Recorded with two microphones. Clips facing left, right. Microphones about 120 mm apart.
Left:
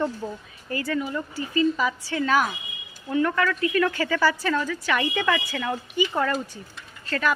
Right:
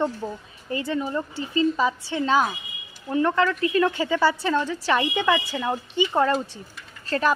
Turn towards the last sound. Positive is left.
turn(degrees=-35)  # may be behind; listen again after turning